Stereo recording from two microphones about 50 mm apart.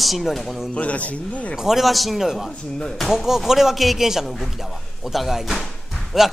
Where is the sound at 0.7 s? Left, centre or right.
Left.